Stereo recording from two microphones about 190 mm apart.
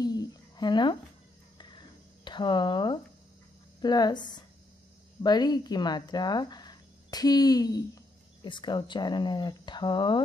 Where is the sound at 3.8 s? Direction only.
20° left (ahead or behind).